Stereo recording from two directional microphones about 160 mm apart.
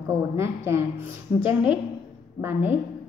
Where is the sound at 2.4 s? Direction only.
10° right (ahead or behind).